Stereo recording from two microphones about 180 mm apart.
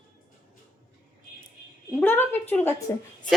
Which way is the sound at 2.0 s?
10° left (ahead or behind).